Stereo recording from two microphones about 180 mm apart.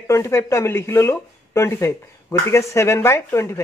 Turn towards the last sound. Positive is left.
turn(degrees=15)  # may be behind; listen again after turning